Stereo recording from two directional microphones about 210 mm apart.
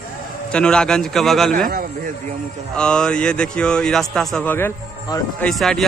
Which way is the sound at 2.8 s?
5° left (ahead or behind).